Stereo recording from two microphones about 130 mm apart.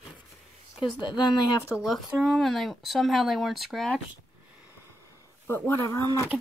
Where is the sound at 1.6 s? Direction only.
5° right (ahead or behind).